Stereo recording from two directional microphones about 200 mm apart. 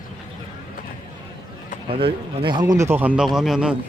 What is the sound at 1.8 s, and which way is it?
Speech, 25° right (ahead or behind).